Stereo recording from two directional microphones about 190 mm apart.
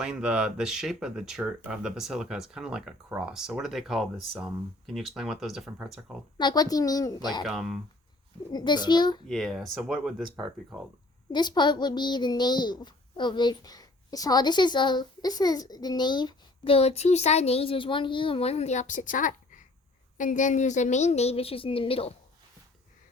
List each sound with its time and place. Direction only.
0.0 s speech: 5° right (ahead or behind)
6.3 s a child's voice: 20° left (ahead or behind)
7.4 s speech: centre (ahead or behind)
8.5 s a child's voice: 20° left (ahead or behind)
9.3 s speech: centre (ahead or behind)
11.3 s a child's voice: 25° left (ahead or behind)